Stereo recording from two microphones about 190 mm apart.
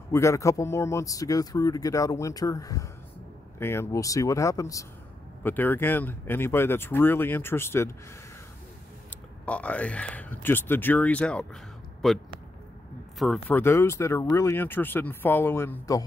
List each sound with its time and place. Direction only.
0.1 s speech: 15° left (ahead or behind)
9.5 s speech: 5° left (ahead or behind)
13.2 s speech: centre (ahead or behind)
13.6 s speech: 15° left (ahead or behind)